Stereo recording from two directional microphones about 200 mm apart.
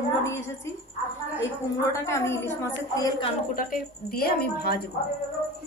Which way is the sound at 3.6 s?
45° left (ahead or behind).